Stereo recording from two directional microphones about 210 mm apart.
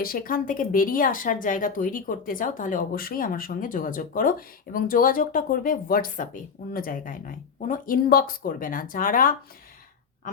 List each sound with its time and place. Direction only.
0.0 s speech: 45° left (ahead or behind)